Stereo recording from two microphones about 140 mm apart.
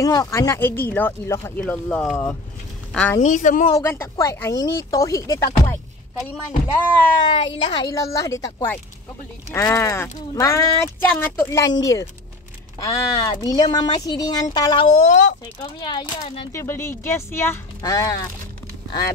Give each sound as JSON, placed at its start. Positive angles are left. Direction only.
{"t": 0.0, "sound": "speech", "side_deg": 25}
{"t": 3.2, "sound": "speech", "side_deg": 60}
{"t": 3.7, "sound": "speech", "side_deg": 15}
{"t": 7.2, "sound": "speech", "side_deg": 40}
{"t": 7.9, "sound": "speech", "side_deg": 25}
{"t": 15.0, "sound": "speech", "side_deg": 60}
{"t": 15.8, "sound": "speech", "side_deg": 30}
{"t": 16.5, "sound": "speech", "side_deg": 20}